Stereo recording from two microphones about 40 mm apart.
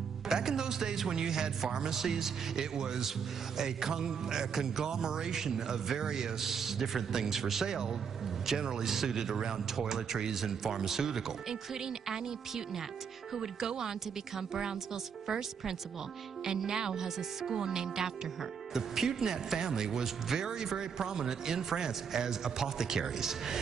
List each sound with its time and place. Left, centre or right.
0.3 s speech: centre